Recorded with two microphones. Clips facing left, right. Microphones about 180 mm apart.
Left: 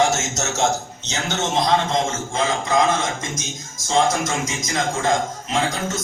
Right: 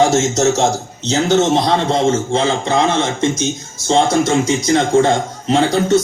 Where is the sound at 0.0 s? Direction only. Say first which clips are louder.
Right 8 dB; 35° right (ahead or behind).